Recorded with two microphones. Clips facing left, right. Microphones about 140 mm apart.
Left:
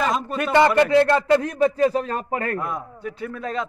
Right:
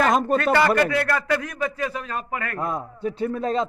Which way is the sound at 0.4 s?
20° left (ahead or behind).